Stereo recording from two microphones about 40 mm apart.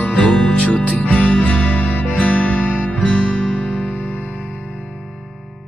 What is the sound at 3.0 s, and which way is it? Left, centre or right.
Music, centre.